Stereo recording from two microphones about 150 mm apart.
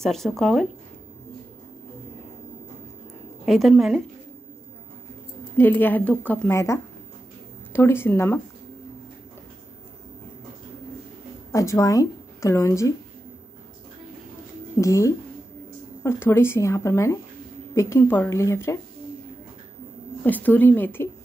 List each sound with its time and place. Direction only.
0.0 s speech: centre (ahead or behind)
3.4 s speech: centre (ahead or behind)
5.6 s a woman's voice: 15° left (ahead or behind)
11.5 s a woman's voice: 20° left (ahead or behind)
14.8 s a woman's voice: 20° left (ahead or behind)
20.2 s a woman's voice: 10° left (ahead or behind)